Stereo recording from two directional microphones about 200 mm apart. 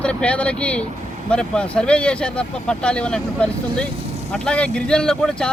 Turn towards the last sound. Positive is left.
turn(degrees=5)  # may be behind; listen again after turning